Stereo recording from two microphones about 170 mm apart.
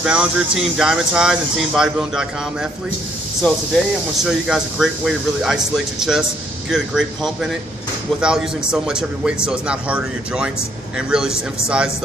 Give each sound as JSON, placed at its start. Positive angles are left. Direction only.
{"t": 0.0, "sound": "speech", "side_deg": -5}
{"t": 4.2, "sound": "speech", "side_deg": -5}